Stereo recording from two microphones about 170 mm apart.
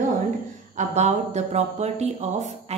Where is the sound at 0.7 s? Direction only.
40° right (ahead or behind).